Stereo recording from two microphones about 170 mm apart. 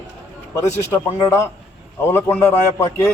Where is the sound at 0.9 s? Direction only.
20° left (ahead or behind).